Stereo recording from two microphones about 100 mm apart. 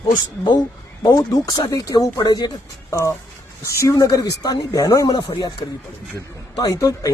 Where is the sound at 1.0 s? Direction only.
40° left (ahead or behind).